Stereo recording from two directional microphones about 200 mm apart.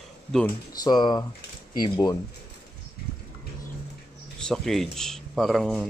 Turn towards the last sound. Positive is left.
turn(degrees=0)  # may be behind; listen again after turning